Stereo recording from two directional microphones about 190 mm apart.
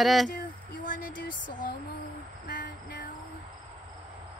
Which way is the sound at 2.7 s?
65° left (ahead or behind).